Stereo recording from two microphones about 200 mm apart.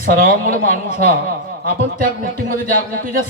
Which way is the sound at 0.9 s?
45° right (ahead or behind).